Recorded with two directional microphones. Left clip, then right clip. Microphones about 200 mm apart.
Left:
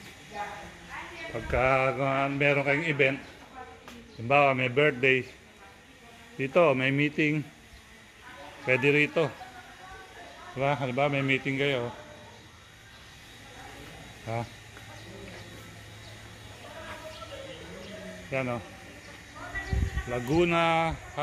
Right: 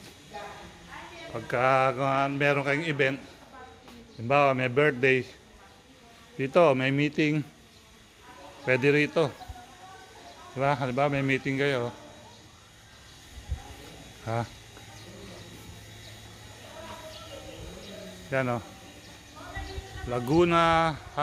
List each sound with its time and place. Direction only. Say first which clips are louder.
1.3 s a man's voice: right 1 dB; 5° right (ahead or behind)
4.3 s a man's voice: even; 15° right (ahead or behind)
6.3 s speech: right 1 dB; 20° right (ahead or behind)
8.6 s a man's voice: even; 15° right (ahead or behind)
10.6 s speech: right 1 dB; 20° right (ahead or behind)
14.2 s speech: right 3 dB; 25° right (ahead or behind)
18.3 s speech: right 3 dB; 30° right (ahead or behind)
20.1 s speech: right 2 dB; 25° right (ahead or behind)